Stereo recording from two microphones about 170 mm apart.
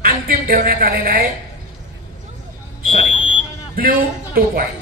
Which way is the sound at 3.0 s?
30° left (ahead or behind).